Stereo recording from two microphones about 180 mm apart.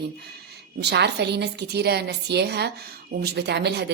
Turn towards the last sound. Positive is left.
turn(degrees=-70)  # may be behind; listen again after turning